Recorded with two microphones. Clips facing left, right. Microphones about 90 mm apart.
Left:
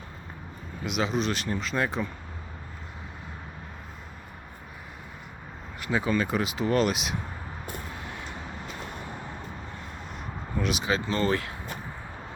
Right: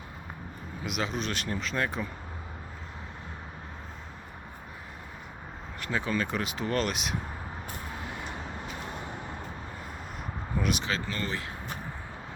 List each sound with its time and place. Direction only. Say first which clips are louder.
0.9 s speech: left 5 dB; centre (ahead or behind)
5.8 s speech: left 4 dB; 5° left (ahead or behind)
10.6 s speech: left 1 dB; centre (ahead or behind)
10.8 s speech: left 5 dB; 15° left (ahead or behind)
11.3 s speech: left 8 dB; 65° left (ahead or behind)